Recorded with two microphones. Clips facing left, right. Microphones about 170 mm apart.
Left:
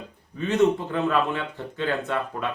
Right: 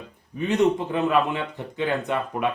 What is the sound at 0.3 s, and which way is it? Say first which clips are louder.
Speech: even; 15° right (ahead or behind).